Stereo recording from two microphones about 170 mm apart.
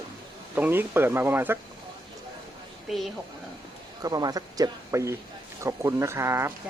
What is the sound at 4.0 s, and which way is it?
Speech, 20° right (ahead or behind).